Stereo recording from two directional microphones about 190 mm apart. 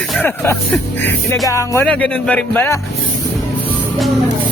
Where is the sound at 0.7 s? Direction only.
10° left (ahead or behind).